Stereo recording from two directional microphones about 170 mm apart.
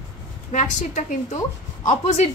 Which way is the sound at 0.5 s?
45° left (ahead or behind).